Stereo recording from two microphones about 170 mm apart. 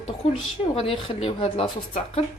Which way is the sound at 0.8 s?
35° left (ahead or behind).